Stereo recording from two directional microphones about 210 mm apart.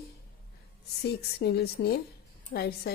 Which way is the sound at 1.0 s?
50° left (ahead or behind).